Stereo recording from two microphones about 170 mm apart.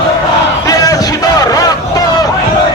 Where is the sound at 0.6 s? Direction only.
20° left (ahead or behind).